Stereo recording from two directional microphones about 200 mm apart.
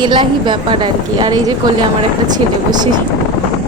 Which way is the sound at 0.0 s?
25° right (ahead or behind).